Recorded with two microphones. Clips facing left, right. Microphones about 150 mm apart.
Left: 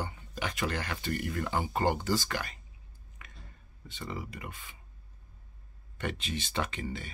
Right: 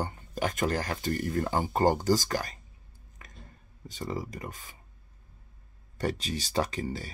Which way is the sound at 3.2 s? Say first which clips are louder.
Right 1 dB; 40° right (ahead or behind).